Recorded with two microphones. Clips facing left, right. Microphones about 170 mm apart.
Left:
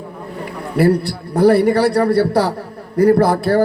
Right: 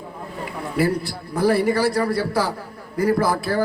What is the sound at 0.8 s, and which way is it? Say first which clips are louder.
A man's voice: left 7 dB; 65° left (ahead or behind).